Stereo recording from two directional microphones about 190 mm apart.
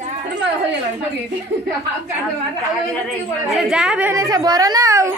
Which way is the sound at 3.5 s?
5° right (ahead or behind).